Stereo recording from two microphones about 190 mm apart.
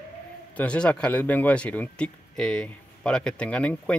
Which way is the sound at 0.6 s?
5° left (ahead or behind).